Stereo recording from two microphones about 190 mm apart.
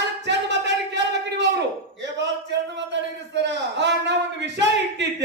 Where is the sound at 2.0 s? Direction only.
65° right (ahead or behind).